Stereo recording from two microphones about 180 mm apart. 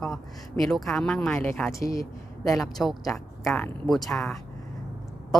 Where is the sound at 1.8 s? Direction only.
15° left (ahead or behind).